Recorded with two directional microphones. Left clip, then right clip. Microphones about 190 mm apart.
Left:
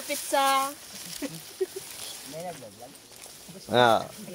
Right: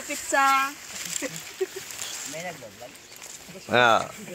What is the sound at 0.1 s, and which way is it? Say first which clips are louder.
Speech: right 3 dB; 45° left (ahead or behind).